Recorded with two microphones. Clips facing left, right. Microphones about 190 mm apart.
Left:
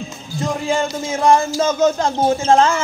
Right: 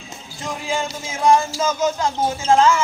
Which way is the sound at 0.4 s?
45° left (ahead or behind).